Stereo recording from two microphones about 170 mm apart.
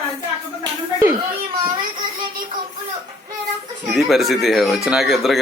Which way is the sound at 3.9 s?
Centre (ahead or behind).